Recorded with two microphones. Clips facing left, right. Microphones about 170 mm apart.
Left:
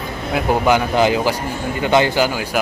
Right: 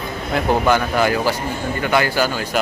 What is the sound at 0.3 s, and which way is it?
Speech, 15° left (ahead or behind).